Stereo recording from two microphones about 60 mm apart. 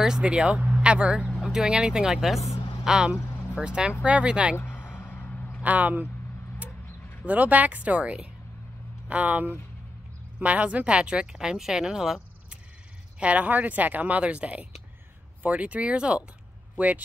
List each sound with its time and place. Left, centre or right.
0.0 s a woman's voice: centre
4.6 s a sound: left
5.6 s speech: right
7.2 s a woman's voice: right; by 12.2 s centre
13.2 s a woman's voice: right